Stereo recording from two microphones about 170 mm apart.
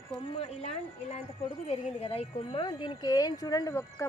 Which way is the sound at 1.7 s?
35° left (ahead or behind).